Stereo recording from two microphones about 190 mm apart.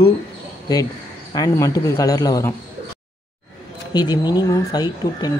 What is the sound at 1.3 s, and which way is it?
Speech, 20° left (ahead or behind).